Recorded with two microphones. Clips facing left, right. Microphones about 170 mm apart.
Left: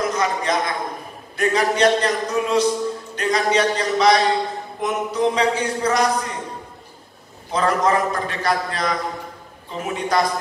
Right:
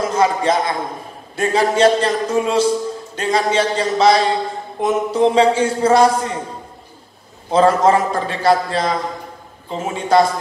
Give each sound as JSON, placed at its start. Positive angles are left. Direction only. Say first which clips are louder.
{"t": 0.0, "sound": "a sound", "louder": "right 5 dB", "side_deg": -30}
{"t": 1.3, "sound": "speech", "louder": "right 3 dB", "side_deg": -30}
{"t": 7.5, "sound": "speech", "louder": "right 6 dB", "side_deg": -30}